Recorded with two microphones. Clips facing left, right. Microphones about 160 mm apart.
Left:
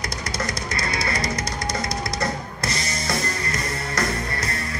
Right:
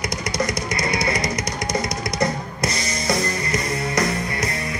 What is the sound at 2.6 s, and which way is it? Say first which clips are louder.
Music: right 4 dB; 20° right (ahead or behind).